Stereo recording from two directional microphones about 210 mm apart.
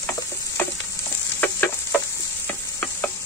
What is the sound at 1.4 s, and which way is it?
Stir, 10° left (ahead or behind).